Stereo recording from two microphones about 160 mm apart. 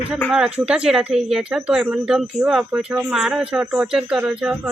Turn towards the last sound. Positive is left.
turn(degrees=-5)  # may be behind; listen again after turning